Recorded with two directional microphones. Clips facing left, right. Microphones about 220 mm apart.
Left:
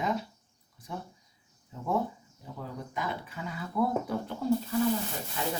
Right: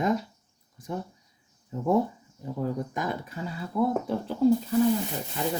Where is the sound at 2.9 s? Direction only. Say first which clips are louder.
Right 4 dB; 45° right (ahead or behind); by 4.2 s 25° right (ahead or behind).